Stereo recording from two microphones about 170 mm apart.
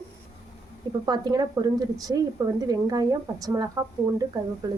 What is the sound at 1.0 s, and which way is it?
Speech, 25° right (ahead or behind).